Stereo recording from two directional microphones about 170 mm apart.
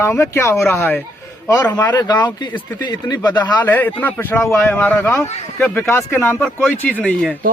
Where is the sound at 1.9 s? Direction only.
25° left (ahead or behind).